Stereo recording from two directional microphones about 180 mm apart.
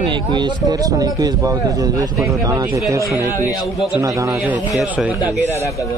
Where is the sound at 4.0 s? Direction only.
20° right (ahead or behind).